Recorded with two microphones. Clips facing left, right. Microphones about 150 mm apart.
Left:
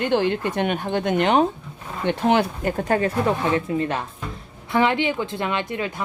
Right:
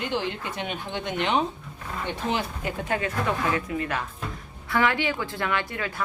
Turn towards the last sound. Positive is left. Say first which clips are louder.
# left 3 dB
turn(degrees=20)  # may be behind; listen again after turning